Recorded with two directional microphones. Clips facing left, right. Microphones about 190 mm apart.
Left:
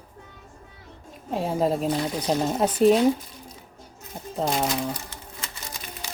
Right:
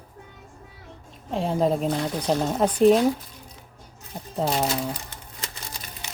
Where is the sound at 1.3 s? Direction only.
5° left (ahead or behind).